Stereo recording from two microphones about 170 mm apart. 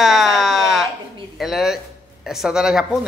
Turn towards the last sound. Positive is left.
turn(degrees=-5)  # may be behind; listen again after turning